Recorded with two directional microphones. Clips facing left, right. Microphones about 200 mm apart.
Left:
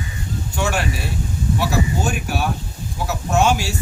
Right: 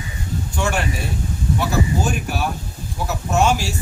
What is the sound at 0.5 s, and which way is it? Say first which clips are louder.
A man's voice: even; centre (ahead or behind).